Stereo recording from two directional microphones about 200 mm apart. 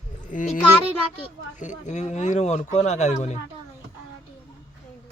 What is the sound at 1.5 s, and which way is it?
Speech, 40° left (ahead or behind).